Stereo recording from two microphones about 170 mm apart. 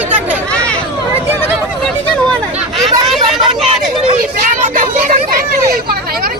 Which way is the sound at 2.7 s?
Centre (ahead or behind).